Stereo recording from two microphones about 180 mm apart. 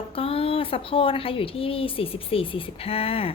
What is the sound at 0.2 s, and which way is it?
A woman's voice, 30° left (ahead or behind).